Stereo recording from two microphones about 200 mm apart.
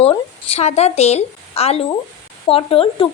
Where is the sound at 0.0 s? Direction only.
30° left (ahead or behind).